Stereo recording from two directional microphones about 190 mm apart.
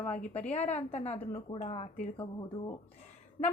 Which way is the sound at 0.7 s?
35° left (ahead or behind).